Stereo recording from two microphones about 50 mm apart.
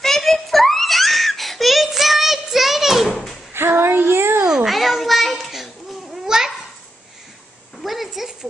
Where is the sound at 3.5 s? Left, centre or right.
Right.